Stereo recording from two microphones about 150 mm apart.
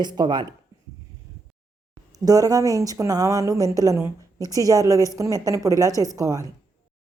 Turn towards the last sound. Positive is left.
turn(degrees=-20)  # may be behind; listen again after turning